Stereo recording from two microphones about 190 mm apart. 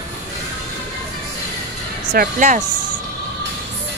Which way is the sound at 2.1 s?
45° right (ahead or behind).